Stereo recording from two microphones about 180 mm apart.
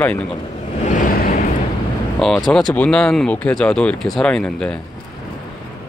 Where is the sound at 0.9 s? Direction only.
50° left (ahead or behind).